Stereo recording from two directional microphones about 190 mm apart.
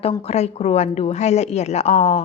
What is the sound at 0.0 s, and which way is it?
A woman's voice, 30° left (ahead or behind).